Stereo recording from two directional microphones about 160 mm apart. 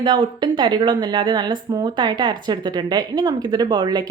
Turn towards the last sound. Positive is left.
turn(degrees=-25)  # may be behind; listen again after turning